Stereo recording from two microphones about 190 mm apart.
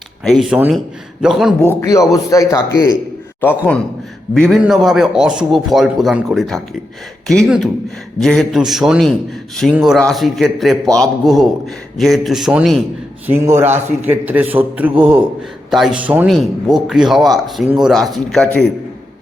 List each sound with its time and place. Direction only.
0.3 s a man's voice: centre (ahead or behind)
1.6 s a man's voice: 15° left (ahead or behind)
4.4 s a man's voice: 5° left (ahead or behind)
13.2 s a man's voice: 10° right (ahead or behind)